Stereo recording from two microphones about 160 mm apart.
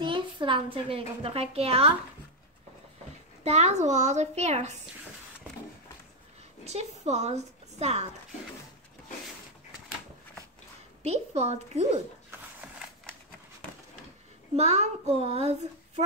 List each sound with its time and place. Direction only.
0.0 s a woman's voice: 30° right (ahead or behind)
3.4 s a woman's voice: 45° right (ahead or behind)
6.6 s speech: 45° right (ahead or behind)
11.0 s a woman's voice: 40° right (ahead or behind)
14.5 s a woman's voice: 40° right (ahead or behind)